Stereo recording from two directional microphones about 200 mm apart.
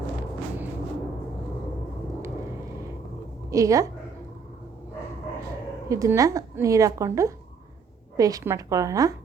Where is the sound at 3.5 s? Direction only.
15° right (ahead or behind).